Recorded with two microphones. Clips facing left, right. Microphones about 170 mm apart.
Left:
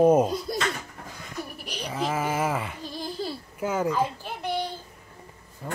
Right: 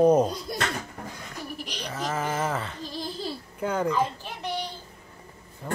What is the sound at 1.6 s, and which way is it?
Sheep, 10° left (ahead or behind).